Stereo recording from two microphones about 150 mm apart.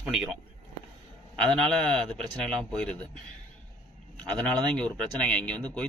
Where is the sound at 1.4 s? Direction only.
5° left (ahead or behind).